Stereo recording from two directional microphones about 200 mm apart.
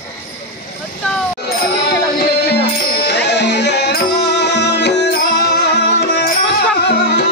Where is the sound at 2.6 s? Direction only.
55° left (ahead or behind).